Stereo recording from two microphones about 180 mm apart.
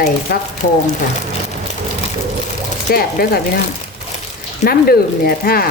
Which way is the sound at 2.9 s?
55° left (ahead or behind).